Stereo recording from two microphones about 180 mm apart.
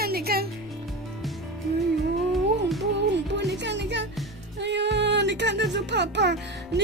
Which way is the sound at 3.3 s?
75° right (ahead or behind).